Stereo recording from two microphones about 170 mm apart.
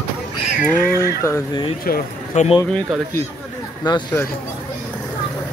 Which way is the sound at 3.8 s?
25° left (ahead or behind).